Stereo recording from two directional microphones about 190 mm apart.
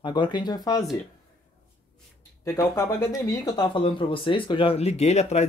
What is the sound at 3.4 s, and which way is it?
Speech, 25° left (ahead or behind).